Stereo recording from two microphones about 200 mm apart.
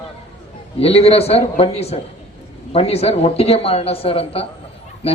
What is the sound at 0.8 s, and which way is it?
A man's voice, 30° left (ahead or behind).